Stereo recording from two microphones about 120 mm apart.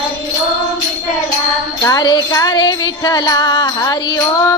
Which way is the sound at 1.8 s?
35° left (ahead or behind).